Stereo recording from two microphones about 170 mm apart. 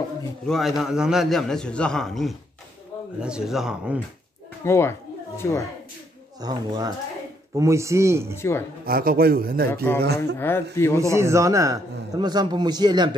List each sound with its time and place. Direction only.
0.5 s a man's voice: centre (ahead or behind)
4.6 s speech: 15° left (ahead or behind)
6.4 s a man's voice: 25° right (ahead or behind)
8.4 s speech: 15° left (ahead or behind)
8.8 s a man's voice: 60° right (ahead or behind)
9.9 s speech: 70° right (ahead or behind)
10.3 s speech: 15° left (ahead or behind)
11.0 s a man's voice: 15° right (ahead or behind)